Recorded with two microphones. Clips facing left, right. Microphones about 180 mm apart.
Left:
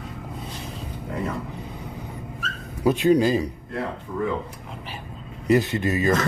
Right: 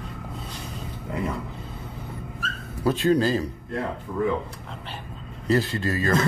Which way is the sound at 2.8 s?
15° left (ahead or behind).